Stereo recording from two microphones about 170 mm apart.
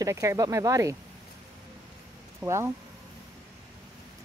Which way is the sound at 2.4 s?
15° right (ahead or behind).